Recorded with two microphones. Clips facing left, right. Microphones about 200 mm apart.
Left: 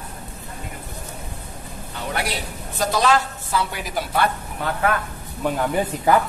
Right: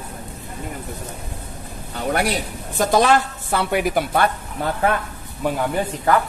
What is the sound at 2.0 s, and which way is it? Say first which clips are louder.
A woman's voice: right 6 dB; 45° right (ahead or behind).